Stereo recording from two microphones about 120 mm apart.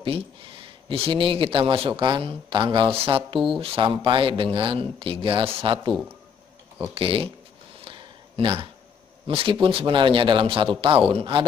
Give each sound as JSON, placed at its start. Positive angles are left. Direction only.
{"t": 0.0, "sound": "speech", "side_deg": -45}
{"t": 7.8, "sound": "a sound", "side_deg": -45}
{"t": 9.3, "sound": "speech", "side_deg": -50}